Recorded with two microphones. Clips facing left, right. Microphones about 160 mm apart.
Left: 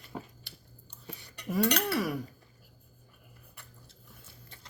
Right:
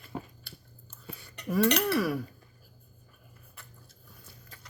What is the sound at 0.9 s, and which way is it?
Whispering, 20° left (ahead or behind).